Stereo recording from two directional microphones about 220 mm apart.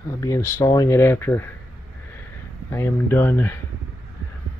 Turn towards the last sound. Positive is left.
turn(degrees=10)  # may be behind; listen again after turning